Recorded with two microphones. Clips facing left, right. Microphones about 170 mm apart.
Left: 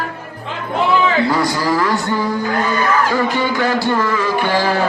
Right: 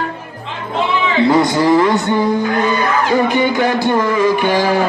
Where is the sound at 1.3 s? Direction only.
20° right (ahead or behind).